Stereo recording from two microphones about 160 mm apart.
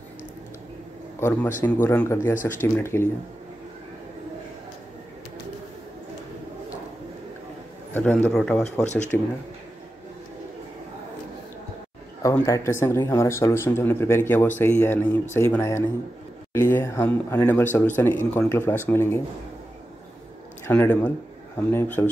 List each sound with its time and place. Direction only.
1.6 s speech: 15° left (ahead or behind)
7.9 s a man's voice: 10° left (ahead or behind)
12.2 s speech: 20° left (ahead or behind)
20.6 s speech: 15° left (ahead or behind)